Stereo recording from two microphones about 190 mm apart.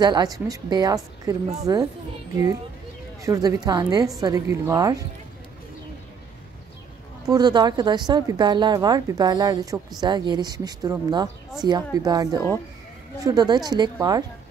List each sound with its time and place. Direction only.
0.0 s a woman's voice: 20° right (ahead or behind)
3.2 s a woman's voice: 15° right (ahead or behind)
7.2 s a woman's voice: 20° right (ahead or behind)